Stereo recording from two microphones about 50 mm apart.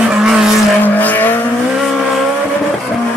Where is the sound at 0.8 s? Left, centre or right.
Left.